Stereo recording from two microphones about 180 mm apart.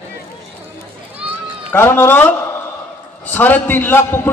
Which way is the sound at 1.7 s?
10° left (ahead or behind).